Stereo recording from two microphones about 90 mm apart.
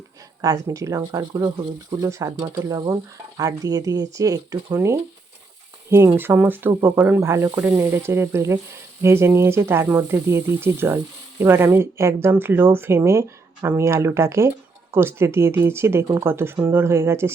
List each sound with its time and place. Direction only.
0.4 s frying: 35° right (ahead or behind)
1.9 s frying: 35° right (ahead or behind)
2.4 s frying: 45° right (ahead or behind)
6.1 s speech: 25° right (ahead or behind)